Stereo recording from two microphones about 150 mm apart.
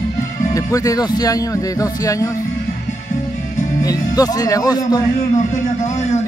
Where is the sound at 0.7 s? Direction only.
20° left (ahead or behind).